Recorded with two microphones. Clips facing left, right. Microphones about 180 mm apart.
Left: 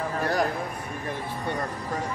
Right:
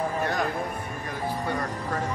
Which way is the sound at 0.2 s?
35° left (ahead or behind).